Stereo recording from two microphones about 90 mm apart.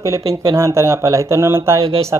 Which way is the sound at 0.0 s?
35° right (ahead or behind).